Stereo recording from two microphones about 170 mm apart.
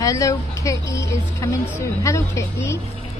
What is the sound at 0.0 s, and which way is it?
A woman's voice, 20° left (ahead or behind).